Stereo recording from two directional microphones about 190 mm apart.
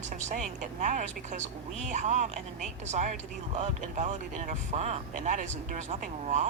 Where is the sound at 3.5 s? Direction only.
40° right (ahead or behind).